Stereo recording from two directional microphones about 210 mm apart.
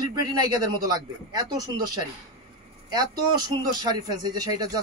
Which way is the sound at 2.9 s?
20° right (ahead or behind).